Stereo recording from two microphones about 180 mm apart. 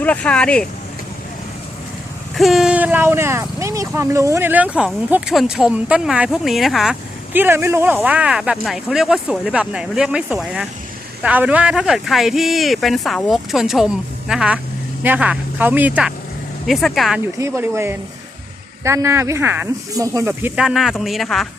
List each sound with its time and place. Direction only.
0.0 s speech: 10° left (ahead or behind)
2.3 s speech: centre (ahead or behind)
7.3 s speech: 15° right (ahead or behind)
17.3 s speech: 15° right (ahead or behind); by 21.4 s centre (ahead or behind)